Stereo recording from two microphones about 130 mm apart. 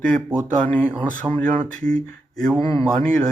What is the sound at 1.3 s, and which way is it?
Speech, 15° right (ahead or behind).